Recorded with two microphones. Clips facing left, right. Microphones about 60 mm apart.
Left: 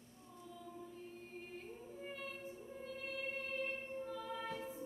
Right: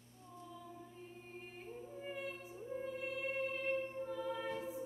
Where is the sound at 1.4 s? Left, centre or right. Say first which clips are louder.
Right 2 dB; centre.